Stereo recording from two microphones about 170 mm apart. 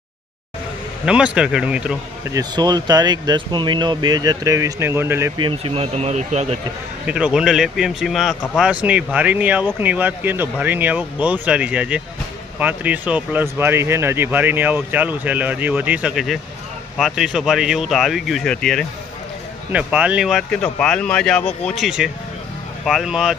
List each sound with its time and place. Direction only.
1.0 s speech: 5° right (ahead or behind)
2.3 s speech: 25° right (ahead or behind)
5.4 s speech: 30° right (ahead or behind)
7.1 s speech: 5° right (ahead or behind)
19.7 s speech: 10° right (ahead or behind)